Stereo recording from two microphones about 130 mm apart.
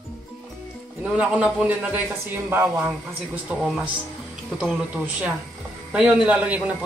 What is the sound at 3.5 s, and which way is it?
Speech, 5° right (ahead or behind).